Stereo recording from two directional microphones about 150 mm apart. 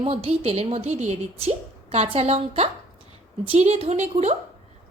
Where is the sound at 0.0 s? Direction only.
40° right (ahead or behind).